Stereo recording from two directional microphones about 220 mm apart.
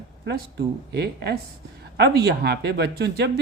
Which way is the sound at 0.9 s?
50° right (ahead or behind).